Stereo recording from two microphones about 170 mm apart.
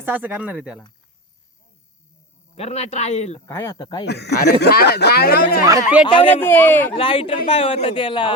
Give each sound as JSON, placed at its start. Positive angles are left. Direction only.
{"t": 0.0, "sound": "speech", "side_deg": -10}
{"t": 2.6, "sound": "speech", "side_deg": 40}
{"t": 3.4, "sound": "speech", "side_deg": 15}
{"t": 4.0, "sound": "speech", "side_deg": 80}
{"t": 6.1, "sound": "speech", "side_deg": 30}
{"t": 6.3, "sound": "speech", "side_deg": 10}
{"t": 6.9, "sound": "speech", "side_deg": 30}